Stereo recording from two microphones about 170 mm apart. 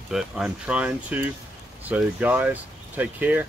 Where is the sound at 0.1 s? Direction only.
5° right (ahead or behind).